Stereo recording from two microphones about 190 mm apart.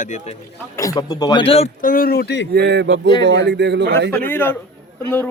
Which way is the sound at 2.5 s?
60° right (ahead or behind).